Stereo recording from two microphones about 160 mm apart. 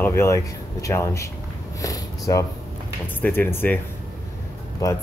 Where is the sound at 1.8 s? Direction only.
20° left (ahead or behind).